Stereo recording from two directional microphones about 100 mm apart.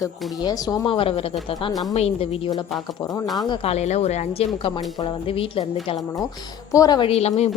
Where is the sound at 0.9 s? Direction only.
65° left (ahead or behind).